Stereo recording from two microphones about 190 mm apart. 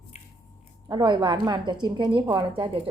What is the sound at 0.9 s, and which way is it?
A woman's voice, 20° right (ahead or behind).